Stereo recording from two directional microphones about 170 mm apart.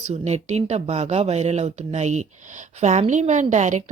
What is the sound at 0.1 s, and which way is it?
Speech, 40° right (ahead or behind).